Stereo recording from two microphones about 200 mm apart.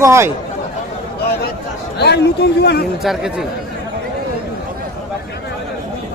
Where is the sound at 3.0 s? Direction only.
Centre (ahead or behind).